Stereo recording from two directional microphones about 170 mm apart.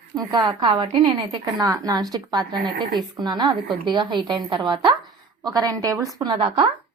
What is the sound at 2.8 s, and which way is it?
Speech, centre (ahead or behind).